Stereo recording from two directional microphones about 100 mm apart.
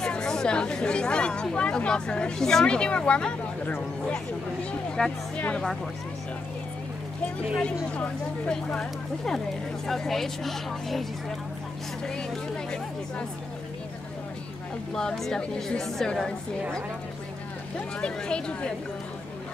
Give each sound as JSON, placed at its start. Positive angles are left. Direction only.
{"t": 0.0, "sound": "speech", "side_deg": 5}
{"t": 5.0, "sound": "speech", "side_deg": 10}
{"t": 7.6, "sound": "speech", "side_deg": 10}
{"t": 15.0, "sound": "speech", "side_deg": 5}
{"t": 17.7, "sound": "speech", "side_deg": 10}